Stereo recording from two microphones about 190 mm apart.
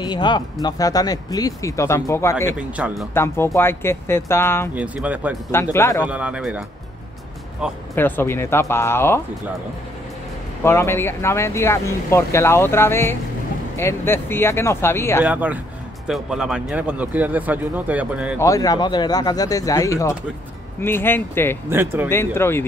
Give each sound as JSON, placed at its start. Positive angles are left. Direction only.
{"t": 0.0, "sound": "speech", "side_deg": 20}
{"t": 2.5, "sound": "a man's voice", "side_deg": -5}
{"t": 3.2, "sound": "speech", "side_deg": 15}
{"t": 4.7, "sound": "speech", "side_deg": -5}
{"t": 5.5, "sound": "speech", "side_deg": 15}
{"t": 6.0, "sound": "speech", "side_deg": -5}
{"t": 7.9, "sound": "speech", "side_deg": 10}
{"t": 10.6, "sound": "speech", "side_deg": 15}
{"t": 15.2, "sound": "speech", "side_deg": -10}
{"t": 18.4, "sound": "speech", "side_deg": 20}
{"t": 21.6, "sound": "speech", "side_deg": -10}
{"t": 22.1, "sound": "speech", "side_deg": 10}